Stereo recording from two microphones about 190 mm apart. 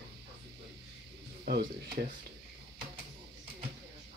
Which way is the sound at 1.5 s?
55° right (ahead or behind).